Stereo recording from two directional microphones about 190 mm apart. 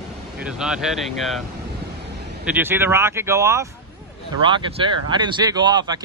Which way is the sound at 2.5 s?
10° right (ahead or behind).